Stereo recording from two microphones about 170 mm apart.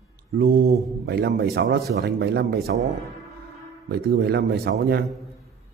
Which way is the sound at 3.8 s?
70° right (ahead or behind).